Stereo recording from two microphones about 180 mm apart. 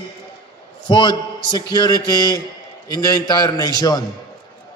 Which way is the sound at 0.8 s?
25° left (ahead or behind).